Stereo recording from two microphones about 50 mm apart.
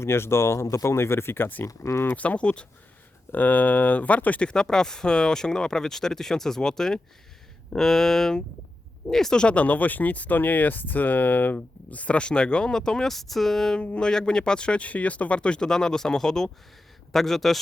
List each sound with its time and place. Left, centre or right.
0.0 s speech: left
1.6 s speech: left
2.1 s speech: left
3.3 s speech: left
4.4 s speech: centre
9.4 s speech: left; by 17.6 s centre